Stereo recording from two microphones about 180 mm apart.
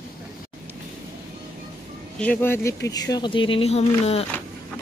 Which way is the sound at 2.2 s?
10° left (ahead or behind).